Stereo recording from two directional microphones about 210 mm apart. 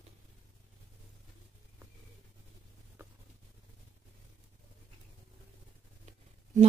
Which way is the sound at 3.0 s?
10° right (ahead or behind).